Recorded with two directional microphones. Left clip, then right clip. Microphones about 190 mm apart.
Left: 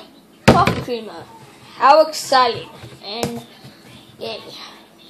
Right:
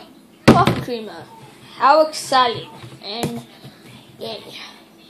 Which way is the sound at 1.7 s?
5° left (ahead or behind).